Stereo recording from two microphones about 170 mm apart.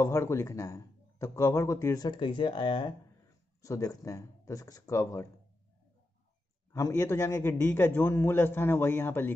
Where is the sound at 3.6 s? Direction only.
20° left (ahead or behind).